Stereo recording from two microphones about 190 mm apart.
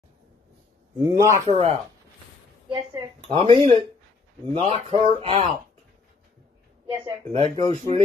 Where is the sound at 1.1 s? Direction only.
15° right (ahead or behind).